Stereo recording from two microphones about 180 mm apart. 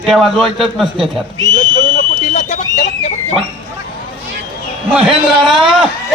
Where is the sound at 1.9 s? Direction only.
45° left (ahead or behind).